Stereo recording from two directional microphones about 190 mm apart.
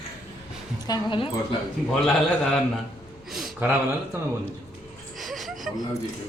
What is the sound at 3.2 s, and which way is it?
Speech, centre (ahead or behind).